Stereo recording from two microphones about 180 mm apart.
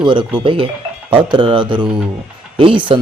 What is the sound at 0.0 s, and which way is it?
Speech, 25° right (ahead or behind).